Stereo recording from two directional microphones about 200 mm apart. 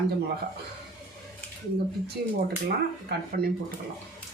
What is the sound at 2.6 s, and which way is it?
Speech, 50° right (ahead or behind).